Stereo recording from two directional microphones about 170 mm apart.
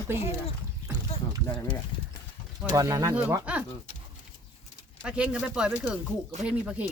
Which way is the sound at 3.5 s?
10° right (ahead or behind).